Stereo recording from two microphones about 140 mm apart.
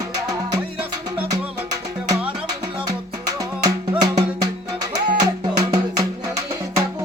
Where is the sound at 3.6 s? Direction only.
30° right (ahead or behind).